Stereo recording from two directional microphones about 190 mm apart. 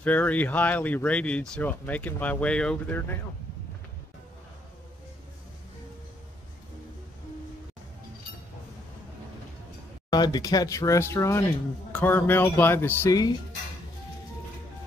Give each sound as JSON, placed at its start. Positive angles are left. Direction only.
{"t": 0.0, "sound": "speech", "side_deg": 10}
{"t": 10.0, "sound": "speech", "side_deg": 20}